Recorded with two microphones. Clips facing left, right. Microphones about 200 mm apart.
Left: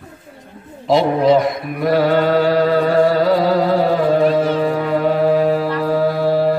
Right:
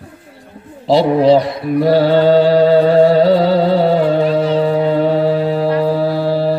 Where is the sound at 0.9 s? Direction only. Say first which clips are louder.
Right 3 dB; 30° right (ahead or behind).